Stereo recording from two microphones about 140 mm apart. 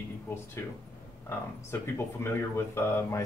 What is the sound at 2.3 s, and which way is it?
Speech, 15° left (ahead or behind).